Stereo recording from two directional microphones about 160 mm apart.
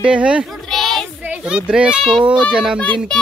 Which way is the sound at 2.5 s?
5° right (ahead or behind).